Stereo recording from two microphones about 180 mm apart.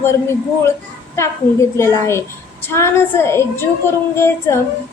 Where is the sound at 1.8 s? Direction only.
15° left (ahead or behind).